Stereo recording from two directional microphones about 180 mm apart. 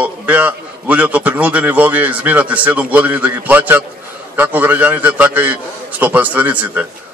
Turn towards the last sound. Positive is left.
turn(degrees=-10)  # may be behind; listen again after turning